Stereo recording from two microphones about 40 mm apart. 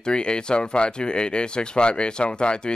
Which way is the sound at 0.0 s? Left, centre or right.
Left.